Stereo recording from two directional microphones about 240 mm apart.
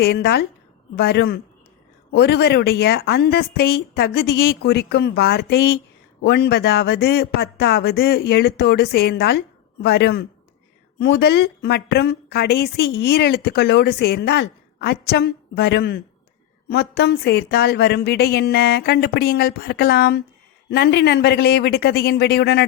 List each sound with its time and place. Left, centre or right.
0.0 s a woman's voice: left